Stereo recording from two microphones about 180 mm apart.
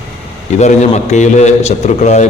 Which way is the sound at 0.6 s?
40° left (ahead or behind).